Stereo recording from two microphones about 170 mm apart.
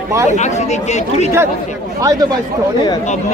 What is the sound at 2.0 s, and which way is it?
Speech, 20° right (ahead or behind).